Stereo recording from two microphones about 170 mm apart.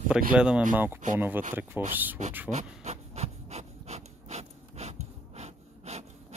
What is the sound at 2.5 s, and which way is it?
Pant, 40° right (ahead or behind).